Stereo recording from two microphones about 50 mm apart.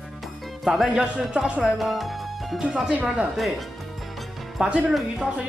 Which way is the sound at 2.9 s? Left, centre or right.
Right.